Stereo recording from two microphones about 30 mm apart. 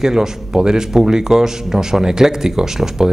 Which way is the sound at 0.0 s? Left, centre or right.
Centre.